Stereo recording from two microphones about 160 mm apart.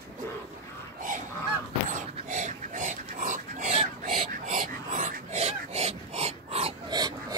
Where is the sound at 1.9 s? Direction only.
50° right (ahead or behind).